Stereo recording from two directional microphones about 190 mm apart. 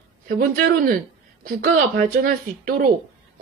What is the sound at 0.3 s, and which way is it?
A woman's voice, 50° right (ahead or behind).